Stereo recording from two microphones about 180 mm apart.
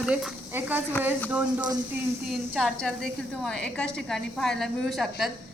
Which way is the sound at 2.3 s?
Centre (ahead or behind).